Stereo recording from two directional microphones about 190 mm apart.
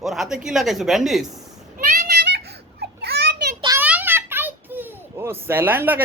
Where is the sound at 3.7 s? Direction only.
10° right (ahead or behind).